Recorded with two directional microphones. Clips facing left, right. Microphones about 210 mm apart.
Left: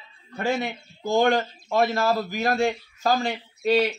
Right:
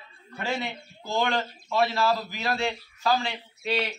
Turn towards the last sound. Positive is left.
turn(degrees=45)  # may be behind; listen again after turning